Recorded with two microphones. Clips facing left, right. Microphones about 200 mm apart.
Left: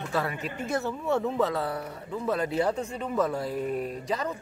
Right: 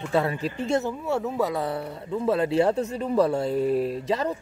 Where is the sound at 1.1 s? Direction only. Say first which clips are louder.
Even; 5° right (ahead or behind); by 4.3 s 30° right (ahead or behind).